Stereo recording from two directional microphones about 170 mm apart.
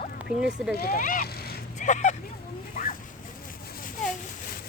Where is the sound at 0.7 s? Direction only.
60° left (ahead or behind).